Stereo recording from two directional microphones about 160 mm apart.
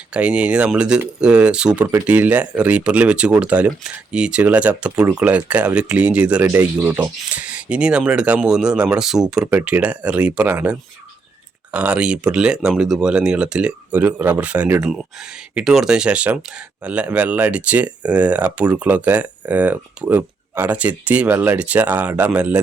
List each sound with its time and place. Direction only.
0.1 s speech: 5° right (ahead or behind)